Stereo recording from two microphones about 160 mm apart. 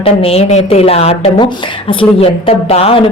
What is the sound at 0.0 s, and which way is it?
A woman's voice, 40° left (ahead or behind).